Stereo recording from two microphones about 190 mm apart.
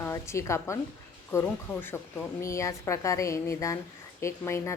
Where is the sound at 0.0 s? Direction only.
15° left (ahead or behind).